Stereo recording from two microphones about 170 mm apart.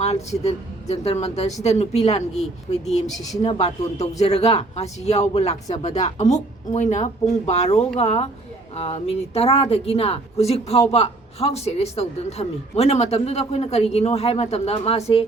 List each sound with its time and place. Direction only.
0.0 s a woman's voice: 40° left (ahead or behind)